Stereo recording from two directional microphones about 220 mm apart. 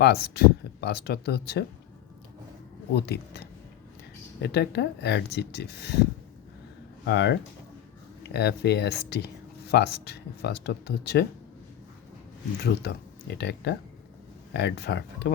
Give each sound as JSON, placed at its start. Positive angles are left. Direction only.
{"t": 0.0, "sound": "speech", "side_deg": 50}
{"t": 2.9, "sound": "speech", "side_deg": 50}
{"t": 7.0, "sound": "speech", "side_deg": 50}
{"t": 12.6, "sound": "speech", "side_deg": 50}